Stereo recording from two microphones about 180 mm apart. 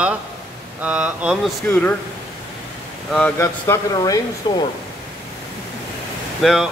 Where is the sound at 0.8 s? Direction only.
5° right (ahead or behind).